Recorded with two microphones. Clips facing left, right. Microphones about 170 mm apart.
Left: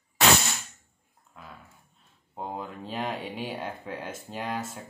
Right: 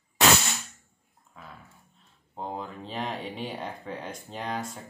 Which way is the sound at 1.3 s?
Centre (ahead or behind).